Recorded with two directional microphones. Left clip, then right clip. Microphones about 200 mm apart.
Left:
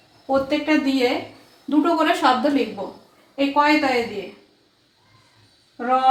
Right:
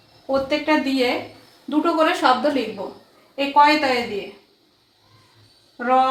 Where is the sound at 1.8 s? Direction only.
20° left (ahead or behind).